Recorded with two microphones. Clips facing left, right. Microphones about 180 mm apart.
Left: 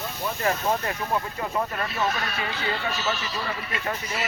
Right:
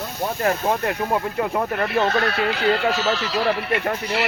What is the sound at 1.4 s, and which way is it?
Speech, 60° right (ahead or behind).